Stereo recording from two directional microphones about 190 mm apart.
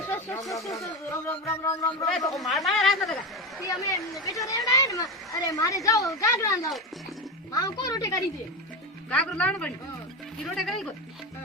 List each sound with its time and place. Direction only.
0.5 s speech: 15° left (ahead or behind)
2.3 s a woman's voice: centre (ahead or behind)
3.6 s speech: 15° left (ahead or behind)
9.0 s a woman's voice: 5° left (ahead or behind)